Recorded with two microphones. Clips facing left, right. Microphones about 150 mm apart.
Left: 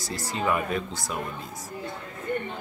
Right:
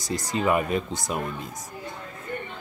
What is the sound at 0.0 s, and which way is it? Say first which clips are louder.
Speech: right 3 dB; 20° right (ahead or behind).